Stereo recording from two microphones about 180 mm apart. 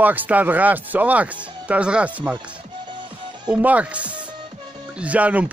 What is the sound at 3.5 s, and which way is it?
Speech, 10° right (ahead or behind).